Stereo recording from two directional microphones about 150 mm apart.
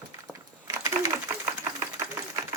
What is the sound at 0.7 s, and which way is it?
Sewing machine, 20° right (ahead or behind).